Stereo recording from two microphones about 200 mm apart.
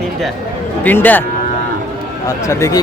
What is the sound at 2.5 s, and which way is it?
Speech, 15° left (ahead or behind).